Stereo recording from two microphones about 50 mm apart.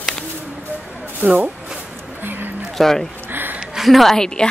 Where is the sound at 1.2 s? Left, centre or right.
Right.